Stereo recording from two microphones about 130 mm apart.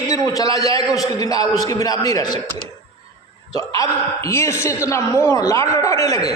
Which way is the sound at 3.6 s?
25° left (ahead or behind).